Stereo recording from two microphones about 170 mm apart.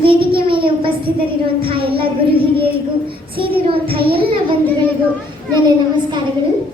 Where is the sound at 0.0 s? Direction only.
30° right (ahead or behind).